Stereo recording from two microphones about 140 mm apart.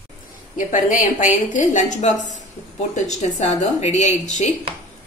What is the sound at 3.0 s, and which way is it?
A woman's voice, 55° left (ahead or behind).